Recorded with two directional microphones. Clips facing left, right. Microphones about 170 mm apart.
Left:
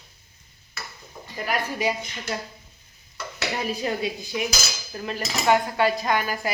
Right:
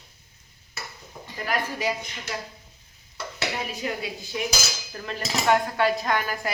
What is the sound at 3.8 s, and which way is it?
Speech, 35° left (ahead or behind).